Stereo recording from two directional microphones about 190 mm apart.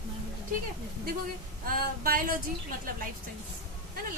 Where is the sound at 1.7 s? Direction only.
50° right (ahead or behind).